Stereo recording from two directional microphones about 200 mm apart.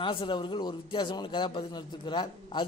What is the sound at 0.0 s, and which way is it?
A man's voice, 25° left (ahead or behind).